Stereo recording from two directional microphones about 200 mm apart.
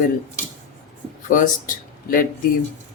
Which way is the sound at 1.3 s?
40° left (ahead or behind).